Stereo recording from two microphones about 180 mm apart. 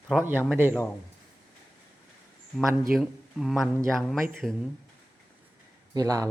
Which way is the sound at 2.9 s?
Centre (ahead or behind).